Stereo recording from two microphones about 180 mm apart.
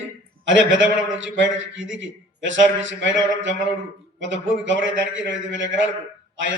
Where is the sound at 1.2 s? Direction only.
90° right.